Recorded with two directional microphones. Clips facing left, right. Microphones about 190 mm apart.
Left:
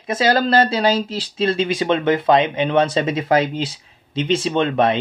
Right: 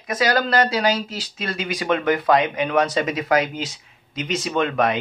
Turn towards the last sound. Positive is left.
turn(degrees=30)  # may be behind; listen again after turning